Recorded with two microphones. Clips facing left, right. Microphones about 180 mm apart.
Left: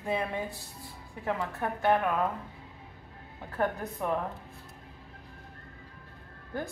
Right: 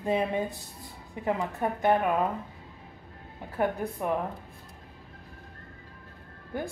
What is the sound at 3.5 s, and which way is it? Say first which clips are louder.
Speech: right 2 dB; 10° right (ahead or behind).